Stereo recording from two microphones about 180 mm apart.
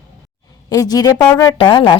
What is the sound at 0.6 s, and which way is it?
Speech, 20° left (ahead or behind).